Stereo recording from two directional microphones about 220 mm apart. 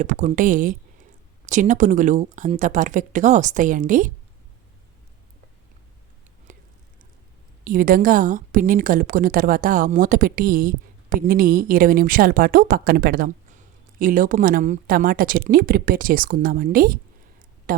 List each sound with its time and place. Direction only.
0.0 s a woman's voice: 35° right (ahead or behind)
6.5 s whispering: 35° right (ahead or behind)
7.6 s a woman's voice: 40° right (ahead or behind)